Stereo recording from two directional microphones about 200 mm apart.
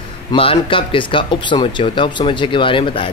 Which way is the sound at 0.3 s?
25° left (ahead or behind).